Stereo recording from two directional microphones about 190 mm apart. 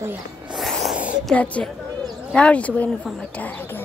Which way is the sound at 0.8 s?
5° right (ahead or behind).